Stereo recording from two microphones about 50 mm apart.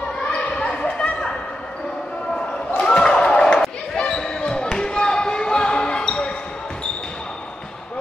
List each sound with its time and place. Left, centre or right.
0.3 s basketball bounce: left
2.8 s a sound: centre
3.9 s basketball bounce: centre